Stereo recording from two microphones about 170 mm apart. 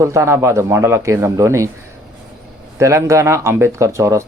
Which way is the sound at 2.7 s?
15° right (ahead or behind).